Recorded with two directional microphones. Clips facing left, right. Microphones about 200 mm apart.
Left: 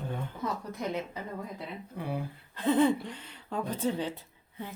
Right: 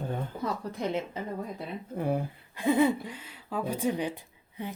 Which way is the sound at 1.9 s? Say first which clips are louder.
Right 7 dB; 50° right (ahead or behind).